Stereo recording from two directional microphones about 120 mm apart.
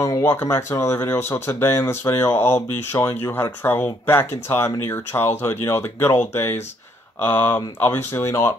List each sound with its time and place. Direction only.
0.2 s speech: 20° left (ahead or behind)